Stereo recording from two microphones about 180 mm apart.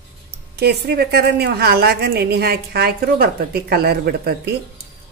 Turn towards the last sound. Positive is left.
turn(degrees=-65)  # may be behind; listen again after turning